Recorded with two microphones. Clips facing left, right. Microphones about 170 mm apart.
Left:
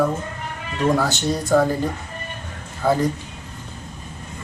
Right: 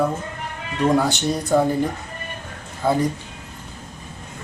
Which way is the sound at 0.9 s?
15° right (ahead or behind).